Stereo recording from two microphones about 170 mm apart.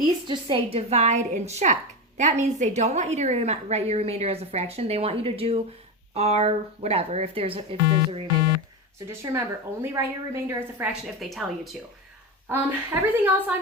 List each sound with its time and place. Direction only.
0.3 s a woman's voice: 30° right (ahead or behind)
9.0 s a woman's voice: 15° right (ahead or behind); by 11.8 s centre (ahead or behind)
12.5 s a woman's voice: 10° right (ahead or behind)